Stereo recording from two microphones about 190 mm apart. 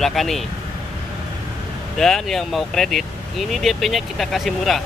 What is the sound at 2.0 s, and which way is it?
Speech, centre (ahead or behind).